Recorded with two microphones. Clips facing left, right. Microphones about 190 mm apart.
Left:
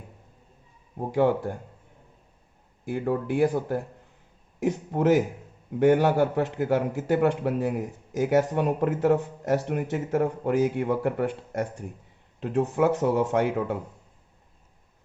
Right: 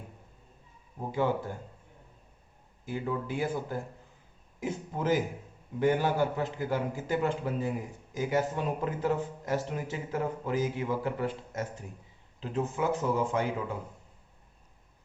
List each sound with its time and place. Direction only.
0.9 s speech: 65° left (ahead or behind)
2.8 s a man's voice: 65° left (ahead or behind)